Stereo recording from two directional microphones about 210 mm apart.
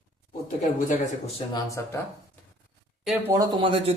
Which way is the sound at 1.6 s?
15° left (ahead or behind).